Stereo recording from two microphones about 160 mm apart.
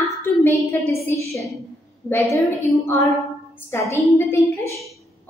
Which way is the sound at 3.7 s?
15° left (ahead or behind).